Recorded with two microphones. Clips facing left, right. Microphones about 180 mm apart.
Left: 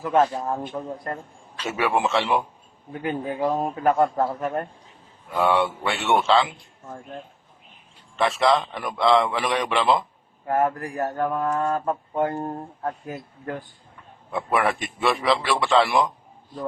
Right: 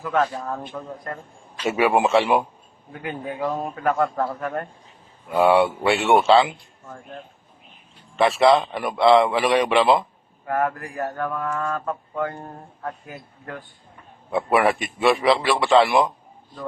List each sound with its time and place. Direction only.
0.0 s a man's voice: 25° left (ahead or behind)
1.6 s speech: 15° right (ahead or behind)
2.9 s a man's voice: 30° left (ahead or behind)
5.3 s speech: 10° right (ahead or behind)
8.4 s a man's voice: 25° right (ahead or behind)
8.7 s speech: 5° right (ahead or behind)
10.4 s speech: 25° left (ahead or behind)
14.3 s a man's voice: 5° right (ahead or behind)